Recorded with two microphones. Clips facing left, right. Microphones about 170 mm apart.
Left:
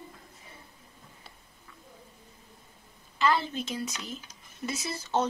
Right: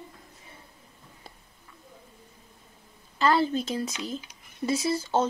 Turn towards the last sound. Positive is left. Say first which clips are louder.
# right 4 dB
turn(degrees=-30)  # may be behind; listen again after turning